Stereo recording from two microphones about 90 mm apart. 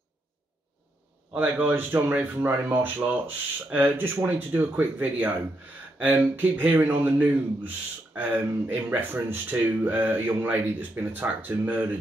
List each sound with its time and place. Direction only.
1.3 s a man's voice: 20° right (ahead or behind)